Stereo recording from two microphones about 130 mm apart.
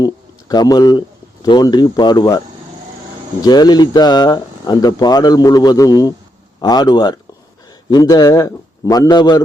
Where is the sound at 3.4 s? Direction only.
30° left (ahead or behind).